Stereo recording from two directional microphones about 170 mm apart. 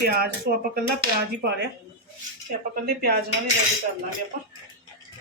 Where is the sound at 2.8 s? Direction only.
65° right (ahead or behind).